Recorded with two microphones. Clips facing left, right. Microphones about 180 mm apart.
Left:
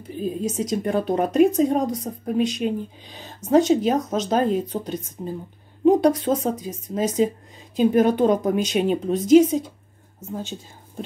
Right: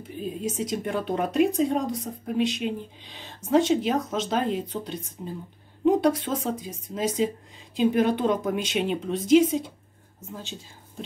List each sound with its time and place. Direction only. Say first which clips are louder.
0.2 s a woman's voice: left 4 dB; 40° left (ahead or behind)